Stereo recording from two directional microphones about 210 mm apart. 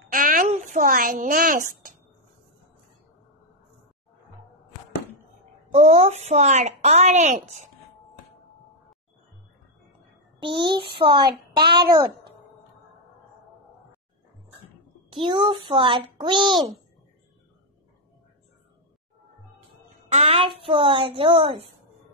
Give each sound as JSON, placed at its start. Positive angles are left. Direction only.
{"t": 0.1, "sound": "a sound", "side_deg": -40}
{"t": 5.7, "sound": "a woman's voice", "side_deg": -30}
{"t": 10.4, "sound": "a child's voice", "side_deg": -25}
{"t": 15.0, "sound": "a child's voice", "side_deg": -25}
{"t": 20.1, "sound": "a child's voice", "side_deg": -30}